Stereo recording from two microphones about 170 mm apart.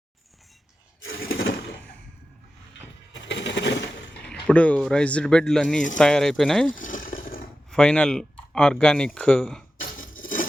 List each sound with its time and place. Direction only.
1.2 s a sound: 65° left (ahead or behind)
3.1 s coin: 90° left
4.3 s speech: 5° left (ahead or behind)
6.7 s a sound: 50° left (ahead or behind)
7.7 s speech: 5° left (ahead or behind)
9.8 s dishes: 55° left (ahead or behind)